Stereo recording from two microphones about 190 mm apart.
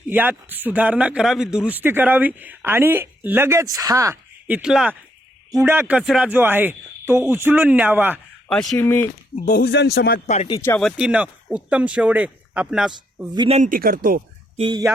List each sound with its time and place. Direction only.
0.1 s a man's voice: 10° right (ahead or behind)
5.5 s a man's voice: 15° right (ahead or behind)
8.4 s speech: 5° left (ahead or behind)
9.6 s speech: 60° left (ahead or behind)
10.2 s speech: 35° left (ahead or behind)
10.6 s speech: 10° left (ahead or behind)
10.8 s speech: 5° right (ahead or behind)
13.3 s speech: 25° right (ahead or behind)
13.6 s speech: 45° right (ahead or behind)
14.5 s speech: 25° right (ahead or behind)